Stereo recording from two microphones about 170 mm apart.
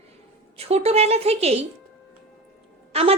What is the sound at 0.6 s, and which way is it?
A woman's voice, 35° right (ahead or behind).